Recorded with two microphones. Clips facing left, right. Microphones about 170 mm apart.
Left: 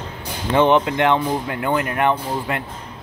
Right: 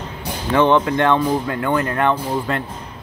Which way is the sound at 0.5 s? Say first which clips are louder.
Even; 20° left (ahead or behind).